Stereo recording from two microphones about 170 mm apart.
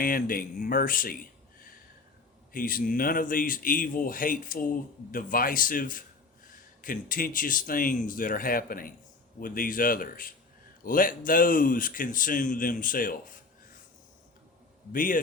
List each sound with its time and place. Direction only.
0.0 s speech: 55° left (ahead or behind)
14.9 s speech: 55° left (ahead or behind)